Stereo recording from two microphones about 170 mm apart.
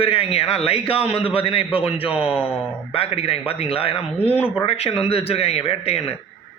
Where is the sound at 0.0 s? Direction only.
35° left (ahead or behind).